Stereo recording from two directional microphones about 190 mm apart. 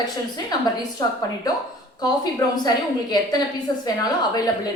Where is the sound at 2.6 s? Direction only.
20° left (ahead or behind).